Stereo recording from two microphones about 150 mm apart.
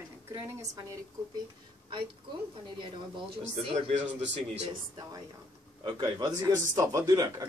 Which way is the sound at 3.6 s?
45° right (ahead or behind).